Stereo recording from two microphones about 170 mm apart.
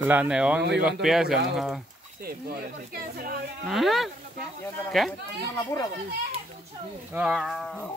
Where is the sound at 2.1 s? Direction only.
60° right (ahead or behind).